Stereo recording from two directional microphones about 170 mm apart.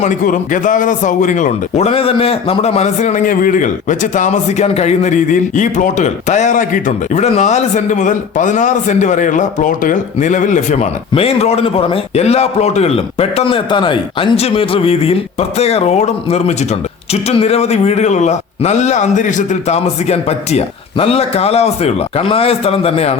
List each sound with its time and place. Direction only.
0.0 s a man's voice: 50° left (ahead or behind)